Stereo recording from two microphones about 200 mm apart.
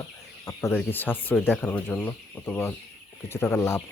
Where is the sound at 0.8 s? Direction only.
10° left (ahead or behind).